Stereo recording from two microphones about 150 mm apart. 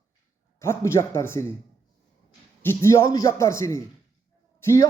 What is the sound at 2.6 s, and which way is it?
A man's voice, 15° left (ahead or behind).